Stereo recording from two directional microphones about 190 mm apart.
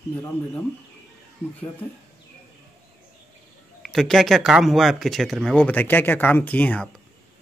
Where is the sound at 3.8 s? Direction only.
Centre (ahead or behind).